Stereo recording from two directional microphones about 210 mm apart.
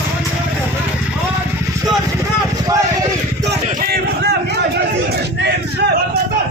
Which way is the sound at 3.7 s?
45° right (ahead or behind).